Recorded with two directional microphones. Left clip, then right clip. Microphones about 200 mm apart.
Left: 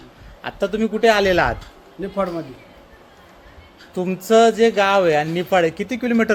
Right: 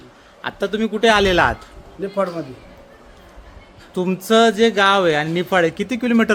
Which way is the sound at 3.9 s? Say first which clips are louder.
Left 1 dB; 15° right (ahead or behind).